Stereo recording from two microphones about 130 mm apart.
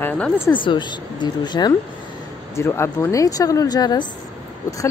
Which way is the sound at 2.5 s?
20° left (ahead or behind).